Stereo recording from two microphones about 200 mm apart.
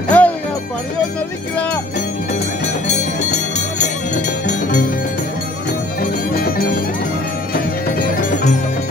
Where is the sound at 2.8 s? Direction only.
35° left (ahead or behind).